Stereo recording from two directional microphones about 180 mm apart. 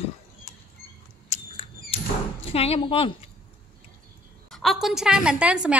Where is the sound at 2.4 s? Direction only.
35° left (ahead or behind).